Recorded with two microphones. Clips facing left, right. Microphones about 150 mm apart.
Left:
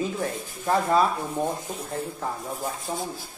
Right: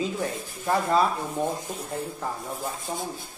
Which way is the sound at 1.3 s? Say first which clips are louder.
Even; centre (ahead or behind).